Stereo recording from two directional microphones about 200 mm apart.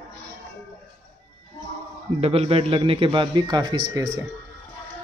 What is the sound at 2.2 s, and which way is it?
A man's voice, 30° right (ahead or behind).